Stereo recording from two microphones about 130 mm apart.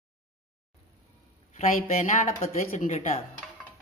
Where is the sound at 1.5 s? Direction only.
70° left (ahead or behind).